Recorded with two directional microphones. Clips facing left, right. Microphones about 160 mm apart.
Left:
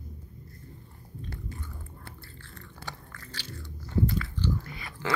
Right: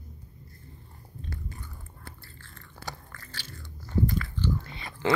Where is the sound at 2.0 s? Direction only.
45° right (ahead or behind).